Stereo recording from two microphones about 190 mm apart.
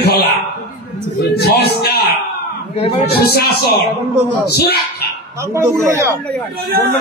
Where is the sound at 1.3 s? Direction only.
55° left (ahead or behind).